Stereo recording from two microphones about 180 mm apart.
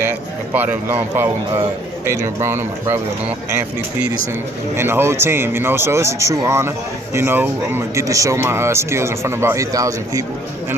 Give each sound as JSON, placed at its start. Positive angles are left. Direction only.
{"t": 0.0, "sound": "speech", "side_deg": -10}